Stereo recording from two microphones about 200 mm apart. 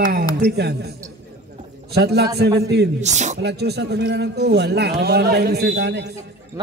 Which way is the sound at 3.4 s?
55° right (ahead or behind).